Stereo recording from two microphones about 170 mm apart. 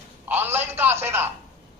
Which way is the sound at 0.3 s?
15° right (ahead or behind).